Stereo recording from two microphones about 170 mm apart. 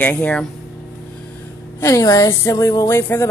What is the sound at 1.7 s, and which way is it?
A woman's voice, 20° left (ahead or behind).